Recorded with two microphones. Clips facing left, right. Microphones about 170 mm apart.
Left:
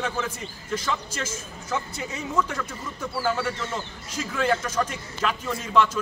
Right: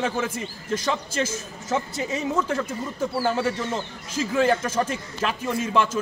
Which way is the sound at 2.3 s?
25° right (ahead or behind).